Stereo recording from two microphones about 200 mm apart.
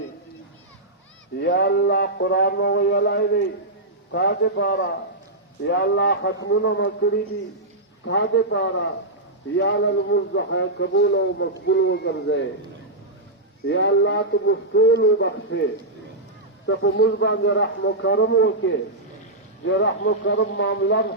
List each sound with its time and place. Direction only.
1.4 s a man's voice: 55° left (ahead or behind)
13.7 s a man's voice: 65° left (ahead or behind)
16.6 s a man's voice: 60° left (ahead or behind)